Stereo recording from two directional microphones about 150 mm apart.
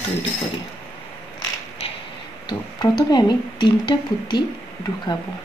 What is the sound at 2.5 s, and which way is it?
Speech, 30° left (ahead or behind).